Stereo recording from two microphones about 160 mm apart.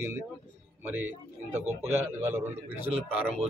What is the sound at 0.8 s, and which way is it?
A man's voice, 10° right (ahead or behind).